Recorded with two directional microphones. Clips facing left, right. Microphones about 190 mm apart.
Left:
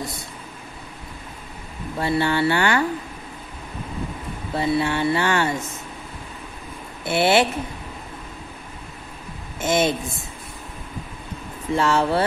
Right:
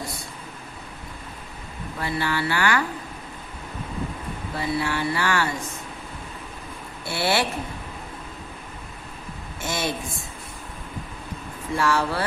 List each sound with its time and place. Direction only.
2.0 s speech: 25° left (ahead or behind)
4.6 s speech: 25° left (ahead or behind)
7.1 s speech: 20° left (ahead or behind)
9.6 s a woman's voice: 20° left (ahead or behind)
11.7 s speech: 25° left (ahead or behind)